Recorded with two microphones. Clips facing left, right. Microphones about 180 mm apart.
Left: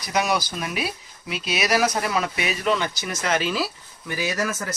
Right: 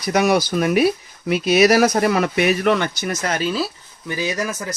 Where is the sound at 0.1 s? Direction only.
60° right (ahead or behind).